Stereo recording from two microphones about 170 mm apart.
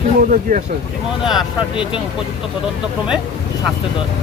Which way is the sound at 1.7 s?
30° left (ahead or behind).